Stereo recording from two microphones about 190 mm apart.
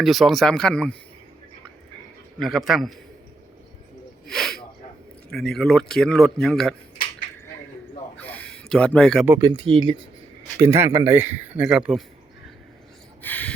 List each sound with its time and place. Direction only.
0.0 s a man's voice: centre (ahead or behind)
2.4 s a man's voice: centre (ahead or behind)
4.3 s a sound: centre (ahead or behind)
5.3 s a man's voice: 5° left (ahead or behind)
8.1 s a sound: 5° left (ahead or behind)
9.2 s speech: 10° right (ahead or behind)
9.5 s speech: 25° right (ahead or behind)
10.6 s speech: 15° right (ahead or behind)
13.2 s a sound: 10° left (ahead or behind)